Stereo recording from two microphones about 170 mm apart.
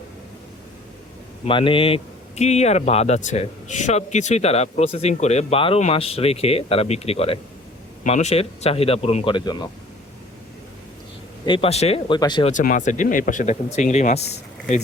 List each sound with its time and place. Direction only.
1.5 s speech: 30° left (ahead or behind)
11.4 s speech: 30° left (ahead or behind)
12.5 s speech: 50° left (ahead or behind)